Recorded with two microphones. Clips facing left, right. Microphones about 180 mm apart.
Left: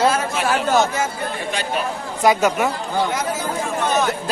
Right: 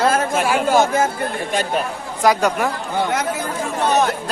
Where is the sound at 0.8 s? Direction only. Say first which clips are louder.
Right 3 dB; 50° right (ahead or behind).